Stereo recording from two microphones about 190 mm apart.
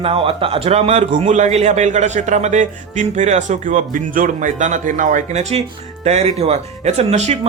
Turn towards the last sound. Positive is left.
turn(degrees=-35)  # may be behind; listen again after turning